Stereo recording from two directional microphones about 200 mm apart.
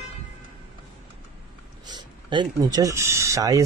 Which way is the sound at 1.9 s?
20° right (ahead or behind).